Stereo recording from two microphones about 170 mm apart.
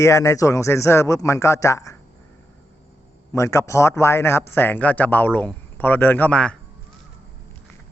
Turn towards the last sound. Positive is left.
turn(degrees=5)  # may be behind; listen again after turning